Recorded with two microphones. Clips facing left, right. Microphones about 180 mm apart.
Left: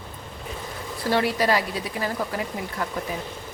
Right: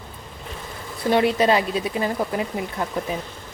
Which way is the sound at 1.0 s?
20° right (ahead or behind).